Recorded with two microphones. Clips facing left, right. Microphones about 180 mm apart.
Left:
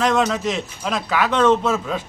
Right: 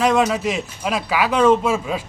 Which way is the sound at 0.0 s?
10° right (ahead or behind).